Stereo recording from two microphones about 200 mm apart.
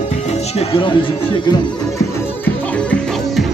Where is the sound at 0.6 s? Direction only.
25° left (ahead or behind).